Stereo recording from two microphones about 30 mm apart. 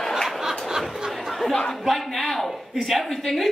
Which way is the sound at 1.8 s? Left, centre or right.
Centre.